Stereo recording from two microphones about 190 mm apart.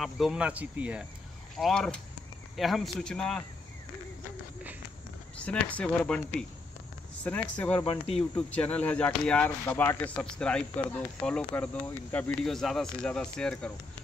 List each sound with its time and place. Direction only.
0.0 s speech: centre (ahead or behind)
1.6 s speech: 5° left (ahead or behind)
5.4 s speech: 5° left (ahead or behind)
7.2 s speech: 10° left (ahead or behind)
7.8 s speech: 30° left (ahead or behind)
8.2 s speech: 5° left (ahead or behind)